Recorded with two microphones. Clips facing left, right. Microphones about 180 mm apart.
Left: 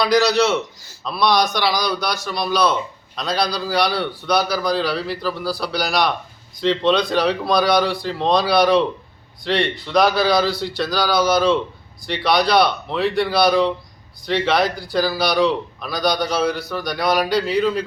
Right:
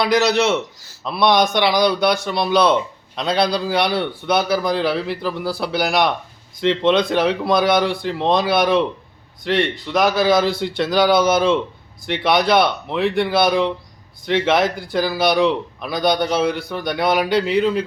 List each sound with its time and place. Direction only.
0.0 s speech: 25° right (ahead or behind)